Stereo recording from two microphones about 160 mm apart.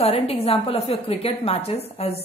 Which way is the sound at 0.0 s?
35° left (ahead or behind).